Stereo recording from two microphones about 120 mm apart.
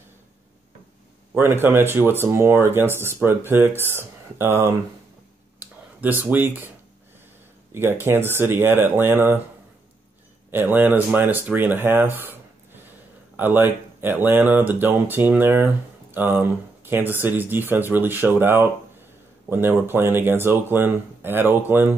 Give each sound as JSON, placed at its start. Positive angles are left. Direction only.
{"t": 1.3, "sound": "speech", "side_deg": -20}
{"t": 5.6, "sound": "a sound", "side_deg": -15}
{"t": 7.7, "sound": "speech", "side_deg": -20}
{"t": 10.5, "sound": "speech", "side_deg": -15}